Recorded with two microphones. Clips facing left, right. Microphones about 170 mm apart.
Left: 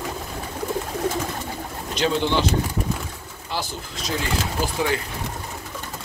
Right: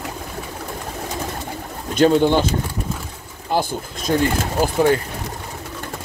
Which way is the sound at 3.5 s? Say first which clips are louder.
Right 9 dB; 50° right (ahead or behind).